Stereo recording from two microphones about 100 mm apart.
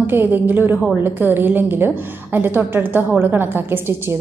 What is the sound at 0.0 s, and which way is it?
A woman's voice, 20° right (ahead or behind).